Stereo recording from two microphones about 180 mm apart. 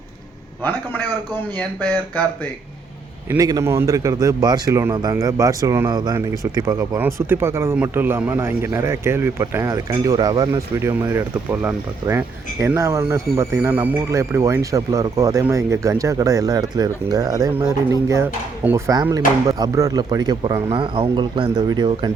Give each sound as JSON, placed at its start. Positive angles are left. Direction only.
{"t": 0.6, "sound": "a man's voice", "side_deg": 10}
{"t": 3.2, "sound": "speech", "side_deg": -20}